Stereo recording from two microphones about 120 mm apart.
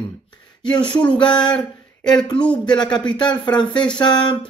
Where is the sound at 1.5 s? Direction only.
5° left (ahead or behind).